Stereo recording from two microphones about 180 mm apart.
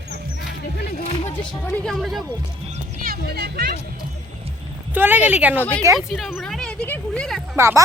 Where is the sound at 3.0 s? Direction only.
60° right (ahead or behind).